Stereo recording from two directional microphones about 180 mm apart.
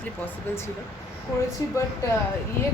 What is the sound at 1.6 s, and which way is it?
Speech, 20° left (ahead or behind).